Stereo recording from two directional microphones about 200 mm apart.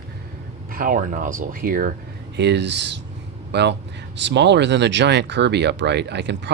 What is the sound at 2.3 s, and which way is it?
Speech, 60° right (ahead or behind).